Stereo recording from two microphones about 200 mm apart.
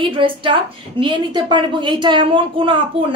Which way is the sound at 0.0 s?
25° right (ahead or behind).